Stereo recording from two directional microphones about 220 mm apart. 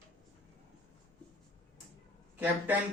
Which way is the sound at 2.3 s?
10° right (ahead or behind).